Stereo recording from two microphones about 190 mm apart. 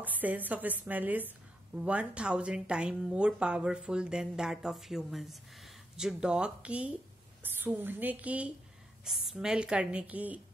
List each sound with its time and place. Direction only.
0.0 s a woman's voice: 10° right (ahead or behind)